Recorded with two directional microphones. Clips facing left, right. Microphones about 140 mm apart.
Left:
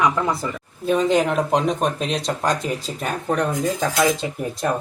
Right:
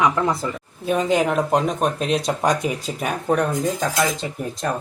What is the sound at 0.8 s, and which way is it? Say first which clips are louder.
Speech: left 1 dB; 5° right (ahead or behind).